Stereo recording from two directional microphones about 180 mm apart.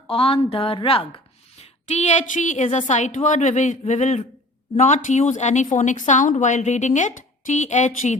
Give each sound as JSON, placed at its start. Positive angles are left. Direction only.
{"t": 0.1, "sound": "a woman's voice", "side_deg": 30}